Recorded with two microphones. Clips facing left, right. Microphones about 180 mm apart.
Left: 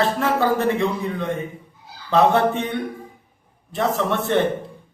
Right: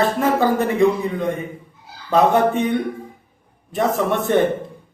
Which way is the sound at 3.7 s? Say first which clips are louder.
Right 2 dB; 10° right (ahead or behind).